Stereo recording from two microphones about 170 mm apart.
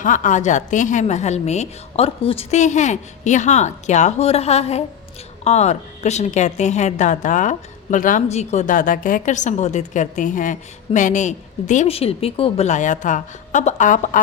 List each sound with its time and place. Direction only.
0.0 s a woman's voice: 50° left (ahead or behind)